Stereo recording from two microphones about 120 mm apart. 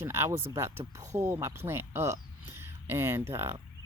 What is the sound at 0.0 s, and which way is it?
Speech, 20° right (ahead or behind).